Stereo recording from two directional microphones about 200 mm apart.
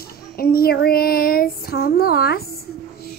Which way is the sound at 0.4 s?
50° left (ahead or behind).